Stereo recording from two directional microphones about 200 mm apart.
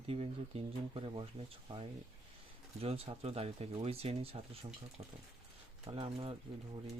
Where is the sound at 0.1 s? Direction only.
30° right (ahead or behind).